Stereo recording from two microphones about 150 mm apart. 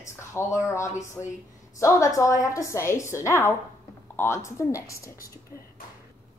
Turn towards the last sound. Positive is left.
turn(degrees=20)  # may be behind; listen again after turning